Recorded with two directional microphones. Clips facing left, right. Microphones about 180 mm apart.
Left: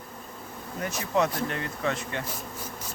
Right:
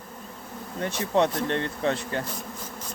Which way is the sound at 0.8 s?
30° right (ahead or behind).